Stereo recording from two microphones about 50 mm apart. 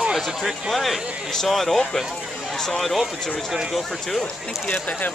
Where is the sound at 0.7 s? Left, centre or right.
Centre.